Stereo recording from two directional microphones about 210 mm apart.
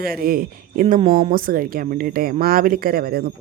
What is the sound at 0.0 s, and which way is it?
Speech, 45° right (ahead or behind).